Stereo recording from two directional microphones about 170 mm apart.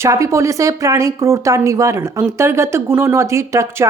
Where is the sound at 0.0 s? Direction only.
20° right (ahead or behind).